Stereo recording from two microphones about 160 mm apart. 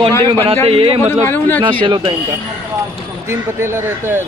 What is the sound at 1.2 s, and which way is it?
Speech, 10° left (ahead or behind).